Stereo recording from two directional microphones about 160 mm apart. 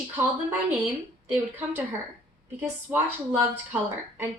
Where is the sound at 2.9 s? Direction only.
10° right (ahead or behind).